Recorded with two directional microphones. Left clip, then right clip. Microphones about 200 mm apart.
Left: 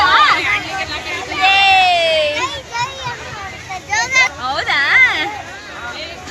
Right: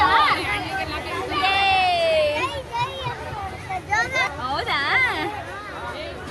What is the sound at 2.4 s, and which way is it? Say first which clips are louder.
Children playing: left 5 dB; centre (ahead or behind).